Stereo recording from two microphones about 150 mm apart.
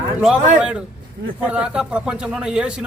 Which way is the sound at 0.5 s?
5° right (ahead or behind).